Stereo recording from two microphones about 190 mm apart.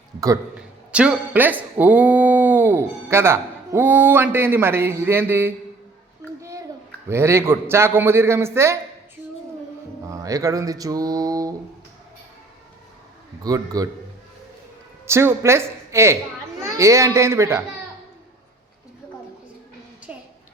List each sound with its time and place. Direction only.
0.9 s speech: 5° right (ahead or behind)
7.1 s a man's voice: 15° right (ahead or behind)
10.1 s a sound: 15° right (ahead or behind)
13.4 s a man's voice: 20° right (ahead or behind)
15.0 s a man's voice: 15° right (ahead or behind)
20.1 s a sound: 5° right (ahead or behind)